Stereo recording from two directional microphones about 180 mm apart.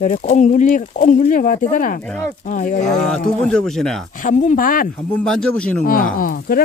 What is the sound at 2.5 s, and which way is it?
Speech, 45° left (ahead or behind).